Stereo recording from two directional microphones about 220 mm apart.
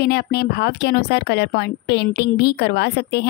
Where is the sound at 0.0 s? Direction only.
45° left (ahead or behind).